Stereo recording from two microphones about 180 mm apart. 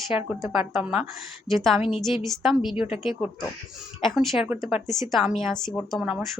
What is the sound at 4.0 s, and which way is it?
Speech, centre (ahead or behind).